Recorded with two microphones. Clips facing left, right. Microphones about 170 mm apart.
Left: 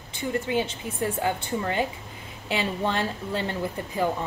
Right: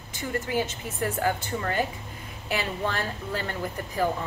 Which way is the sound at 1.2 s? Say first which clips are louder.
Left 1 dB; 20° left (ahead or behind).